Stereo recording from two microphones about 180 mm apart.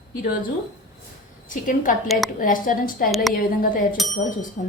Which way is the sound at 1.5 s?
45° left (ahead or behind).